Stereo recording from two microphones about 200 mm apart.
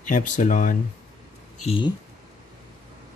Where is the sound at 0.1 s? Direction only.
40° left (ahead or behind).